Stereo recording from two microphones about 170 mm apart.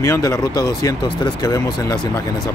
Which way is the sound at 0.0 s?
20° left (ahead or behind).